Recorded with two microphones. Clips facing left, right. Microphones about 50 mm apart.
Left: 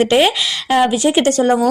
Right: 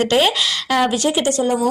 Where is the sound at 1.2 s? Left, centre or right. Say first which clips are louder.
Left 7 dB; left.